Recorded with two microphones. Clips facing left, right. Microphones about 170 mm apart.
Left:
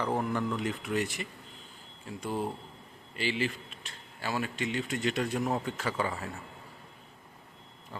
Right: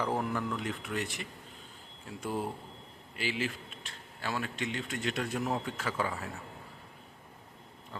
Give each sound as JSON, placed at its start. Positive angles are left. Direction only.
{"t": 0.0, "sound": "speech", "side_deg": 0}